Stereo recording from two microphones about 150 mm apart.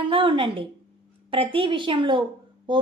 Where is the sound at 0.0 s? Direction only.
35° right (ahead or behind).